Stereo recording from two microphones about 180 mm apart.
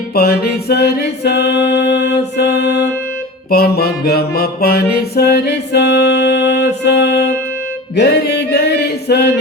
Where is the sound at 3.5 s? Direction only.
60° left (ahead or behind).